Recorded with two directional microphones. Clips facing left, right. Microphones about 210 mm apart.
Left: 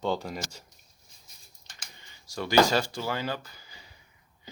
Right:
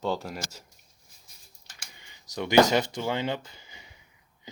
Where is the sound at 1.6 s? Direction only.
15° right (ahead or behind).